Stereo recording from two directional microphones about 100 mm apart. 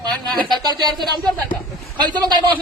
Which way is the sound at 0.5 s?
45° right (ahead or behind).